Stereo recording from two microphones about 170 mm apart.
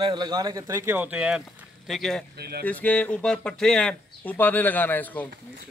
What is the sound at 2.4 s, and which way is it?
Speech, 70° right (ahead or behind).